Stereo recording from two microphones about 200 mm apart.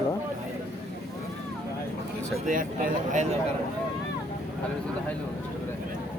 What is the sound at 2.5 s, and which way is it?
Speech, 45° right (ahead or behind).